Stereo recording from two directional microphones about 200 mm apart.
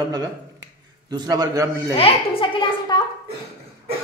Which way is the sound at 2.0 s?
25° left (ahead or behind).